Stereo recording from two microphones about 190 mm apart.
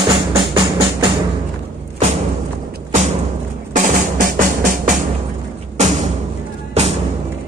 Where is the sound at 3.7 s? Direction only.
40° right (ahead or behind).